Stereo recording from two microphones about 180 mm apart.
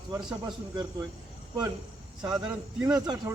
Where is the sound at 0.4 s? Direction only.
25° right (ahead or behind).